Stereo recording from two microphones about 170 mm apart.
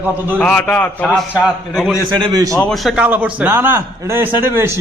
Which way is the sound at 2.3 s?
20° right (ahead or behind).